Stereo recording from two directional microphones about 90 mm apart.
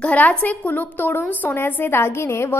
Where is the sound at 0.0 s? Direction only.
15° left (ahead or behind).